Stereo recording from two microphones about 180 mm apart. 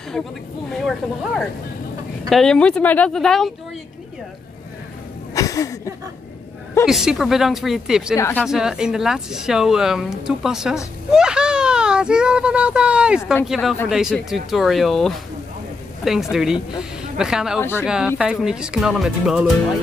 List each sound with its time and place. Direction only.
0.8 s speech: 5° left (ahead or behind)
5.3 s a sound: 20° left (ahead or behind)
6.9 s speech: centre (ahead or behind)
8.2 s speech: 10° left (ahead or behind)
8.5 s a child's voice: 5° right (ahead or behind)
17.6 s speech: 10° left (ahead or behind)
17.8 s speech: 5° right (ahead or behind)